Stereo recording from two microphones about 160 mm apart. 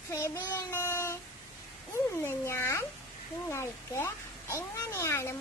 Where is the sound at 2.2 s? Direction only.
15° left (ahead or behind).